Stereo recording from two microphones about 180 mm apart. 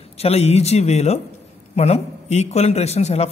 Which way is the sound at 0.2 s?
35° left (ahead or behind).